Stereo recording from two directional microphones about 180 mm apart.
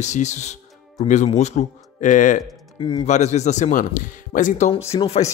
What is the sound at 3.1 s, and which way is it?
Speech, 40° left (ahead or behind).